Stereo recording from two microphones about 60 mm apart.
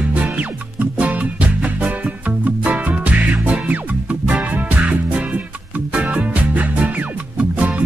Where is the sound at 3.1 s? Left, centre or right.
Centre.